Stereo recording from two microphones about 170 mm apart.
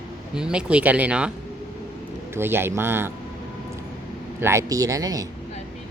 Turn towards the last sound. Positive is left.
turn(degrees=-20)  # may be behind; listen again after turning